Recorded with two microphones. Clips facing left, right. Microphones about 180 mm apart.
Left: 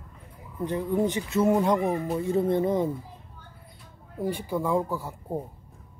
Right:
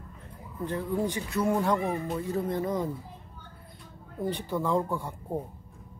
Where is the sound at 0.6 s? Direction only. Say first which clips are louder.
Left 4 dB; 20° left (ahead or behind).